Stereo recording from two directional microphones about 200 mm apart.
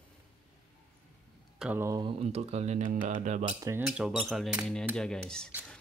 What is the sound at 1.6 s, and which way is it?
Speech, 10° right (ahead or behind).